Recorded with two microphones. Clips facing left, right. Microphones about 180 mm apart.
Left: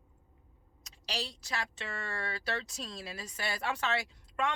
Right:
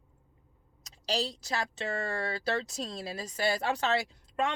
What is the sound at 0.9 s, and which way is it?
Speech, 40° right (ahead or behind).